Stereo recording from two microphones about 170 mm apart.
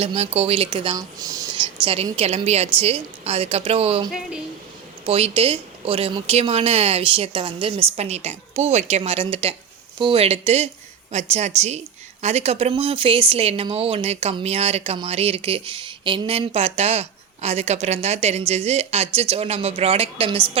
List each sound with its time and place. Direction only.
0.0 s speech: 35° right (ahead or behind)
5.0 s speech: 35° right (ahead or behind)